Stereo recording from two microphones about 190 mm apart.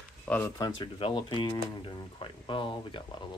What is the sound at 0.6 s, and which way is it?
Speech, 30° left (ahead or behind).